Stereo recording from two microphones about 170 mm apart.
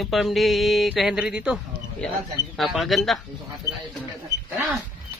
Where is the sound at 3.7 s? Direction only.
20° right (ahead or behind).